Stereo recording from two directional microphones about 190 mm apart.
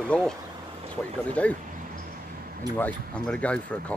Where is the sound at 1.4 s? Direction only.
5° left (ahead or behind).